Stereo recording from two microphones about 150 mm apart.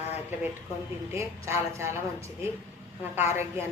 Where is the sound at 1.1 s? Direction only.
20° right (ahead or behind).